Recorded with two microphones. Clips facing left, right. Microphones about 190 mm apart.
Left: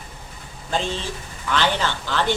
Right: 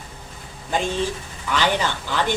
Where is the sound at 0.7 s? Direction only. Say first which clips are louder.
Right 3 dB; 15° right (ahead or behind).